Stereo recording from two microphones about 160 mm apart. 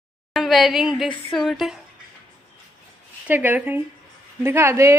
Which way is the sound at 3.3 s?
10° right (ahead or behind).